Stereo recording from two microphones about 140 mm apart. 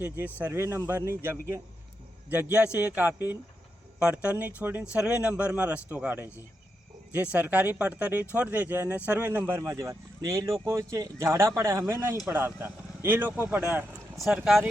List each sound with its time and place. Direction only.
0.0 s speech: 10° right (ahead or behind)
14.2 s speech: centre (ahead or behind)